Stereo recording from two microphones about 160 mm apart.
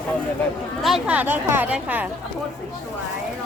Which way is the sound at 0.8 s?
5° right (ahead or behind).